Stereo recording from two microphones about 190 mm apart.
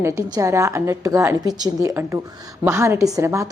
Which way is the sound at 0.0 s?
15° right (ahead or behind).